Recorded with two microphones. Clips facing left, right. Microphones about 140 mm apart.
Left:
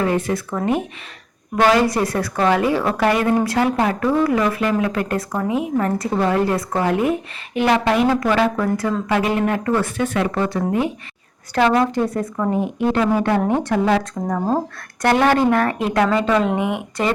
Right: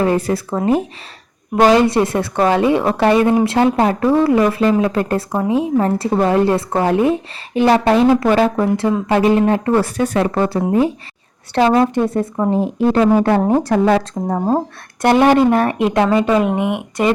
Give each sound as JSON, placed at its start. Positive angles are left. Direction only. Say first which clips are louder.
{"t": 0.0, "sound": "speech", "louder": "right 4 dB", "side_deg": -35}
{"t": 9.0, "sound": "speech", "louder": "right 6 dB", "side_deg": -30}